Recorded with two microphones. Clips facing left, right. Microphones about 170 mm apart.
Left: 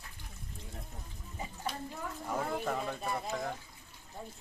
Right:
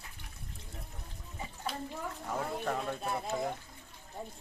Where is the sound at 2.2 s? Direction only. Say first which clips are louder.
Left 1 dB; centre (ahead or behind).